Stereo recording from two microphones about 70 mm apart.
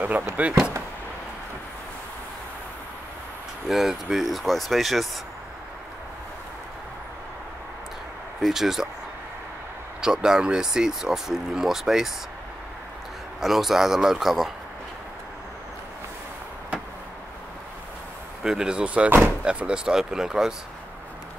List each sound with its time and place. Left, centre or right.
0.4 s speech: right
3.6 s speech: centre
8.4 s speech: centre
10.0 s speech: centre
13.4 s speech: centre
18.4 s speech: centre